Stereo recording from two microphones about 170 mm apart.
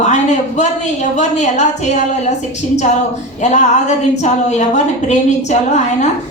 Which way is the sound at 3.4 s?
45° left (ahead or behind).